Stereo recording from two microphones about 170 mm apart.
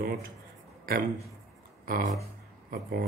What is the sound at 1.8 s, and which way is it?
Speech, 60° right (ahead or behind).